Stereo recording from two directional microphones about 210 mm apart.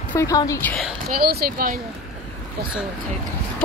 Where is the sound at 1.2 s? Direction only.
45° right (ahead or behind).